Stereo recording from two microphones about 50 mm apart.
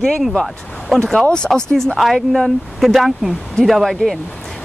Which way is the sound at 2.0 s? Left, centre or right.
Centre.